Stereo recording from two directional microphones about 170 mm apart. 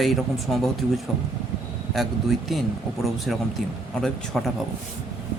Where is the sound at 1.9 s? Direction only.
Centre (ahead or behind).